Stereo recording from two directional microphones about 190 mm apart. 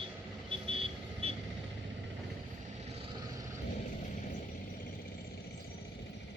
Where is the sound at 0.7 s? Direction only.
30° right (ahead or behind).